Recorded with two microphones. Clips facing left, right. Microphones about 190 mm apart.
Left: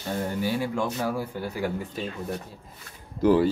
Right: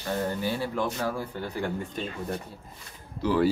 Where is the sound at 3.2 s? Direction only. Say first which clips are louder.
Left 7 dB; 50° left (ahead or behind).